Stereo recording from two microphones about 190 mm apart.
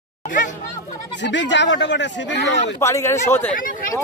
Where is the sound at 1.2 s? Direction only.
70° left (ahead or behind).